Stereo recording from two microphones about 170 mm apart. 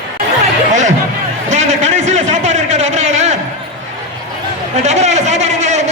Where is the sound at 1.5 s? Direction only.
45° right (ahead or behind).